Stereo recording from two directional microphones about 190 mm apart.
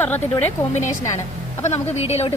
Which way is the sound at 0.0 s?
10° left (ahead or behind).